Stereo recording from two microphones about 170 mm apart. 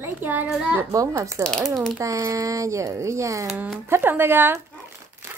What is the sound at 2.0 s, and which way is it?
Speech, 20° right (ahead or behind).